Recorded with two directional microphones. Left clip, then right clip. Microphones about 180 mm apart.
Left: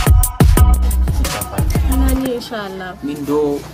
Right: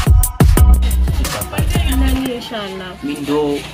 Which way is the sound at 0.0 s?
Centre (ahead or behind).